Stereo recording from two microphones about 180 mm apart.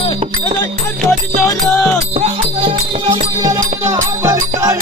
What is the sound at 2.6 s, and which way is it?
Music, 35° right (ahead or behind).